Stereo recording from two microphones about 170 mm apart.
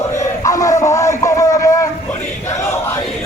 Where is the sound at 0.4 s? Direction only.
20° left (ahead or behind).